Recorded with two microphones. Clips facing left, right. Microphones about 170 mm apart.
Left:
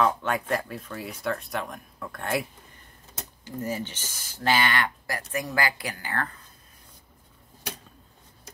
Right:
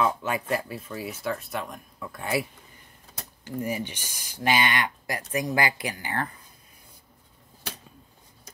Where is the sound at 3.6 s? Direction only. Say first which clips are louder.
Right 1 dB; 15° right (ahead or behind).